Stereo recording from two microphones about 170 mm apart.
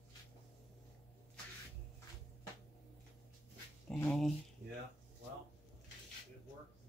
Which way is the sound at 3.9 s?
5° left (ahead or behind).